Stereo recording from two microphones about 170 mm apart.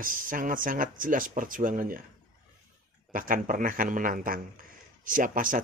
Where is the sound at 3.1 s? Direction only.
55° right (ahead or behind).